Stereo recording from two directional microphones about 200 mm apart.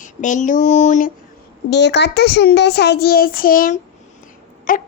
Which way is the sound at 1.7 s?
60° left (ahead or behind).